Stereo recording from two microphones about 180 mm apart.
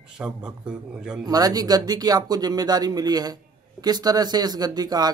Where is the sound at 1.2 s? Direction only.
20° right (ahead or behind).